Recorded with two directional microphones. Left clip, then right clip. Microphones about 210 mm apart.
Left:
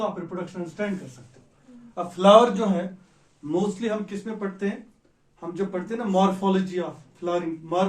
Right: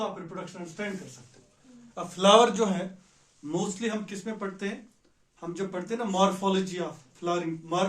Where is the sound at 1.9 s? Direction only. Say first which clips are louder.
Left 5 dB; 35° right (ahead or behind).